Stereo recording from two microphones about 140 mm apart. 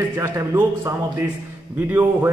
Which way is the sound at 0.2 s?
20° right (ahead or behind).